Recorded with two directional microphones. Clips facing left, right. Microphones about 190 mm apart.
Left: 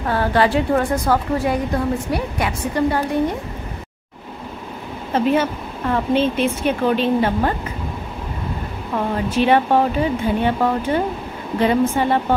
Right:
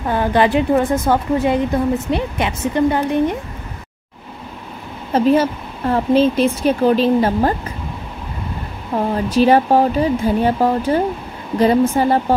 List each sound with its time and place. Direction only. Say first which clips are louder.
0.1 s a woman's voice: right 2 dB; 15° right (ahead or behind)
5.1 s speech: right 4 dB; 35° right (ahead or behind)
8.9 s speech: right 3 dB; 40° right (ahead or behind)